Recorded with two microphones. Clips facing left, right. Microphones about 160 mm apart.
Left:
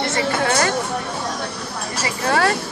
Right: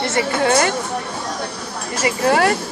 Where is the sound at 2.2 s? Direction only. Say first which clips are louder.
Right 3 dB; 20° right (ahead or behind).